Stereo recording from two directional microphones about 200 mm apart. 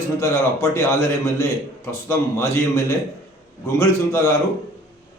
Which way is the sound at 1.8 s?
15° left (ahead or behind).